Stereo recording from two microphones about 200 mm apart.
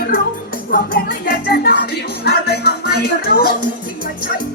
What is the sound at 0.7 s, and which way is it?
Music, 50° left (ahead or behind).